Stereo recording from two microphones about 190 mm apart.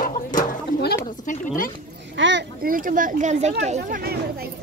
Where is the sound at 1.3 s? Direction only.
45° left (ahead or behind).